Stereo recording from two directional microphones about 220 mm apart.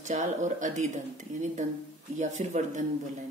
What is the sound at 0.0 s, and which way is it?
Speech, 35° right (ahead or behind).